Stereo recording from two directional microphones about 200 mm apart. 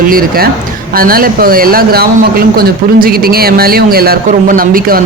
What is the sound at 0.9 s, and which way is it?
Speech, 45° right (ahead or behind).